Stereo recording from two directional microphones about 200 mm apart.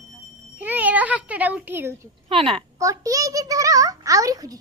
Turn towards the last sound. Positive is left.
turn(degrees=-15)  # may be behind; listen again after turning